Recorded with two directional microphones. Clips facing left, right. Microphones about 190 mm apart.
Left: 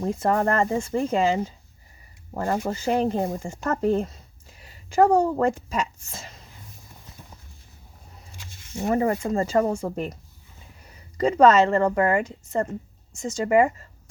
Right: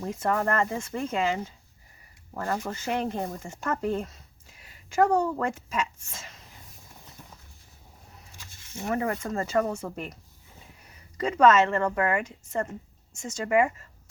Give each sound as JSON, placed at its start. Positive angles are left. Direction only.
{"t": 0.0, "sound": "a woman's voice", "side_deg": 35}
{"t": 8.8, "sound": "speech", "side_deg": 30}
{"t": 11.2, "sound": "speech", "side_deg": 35}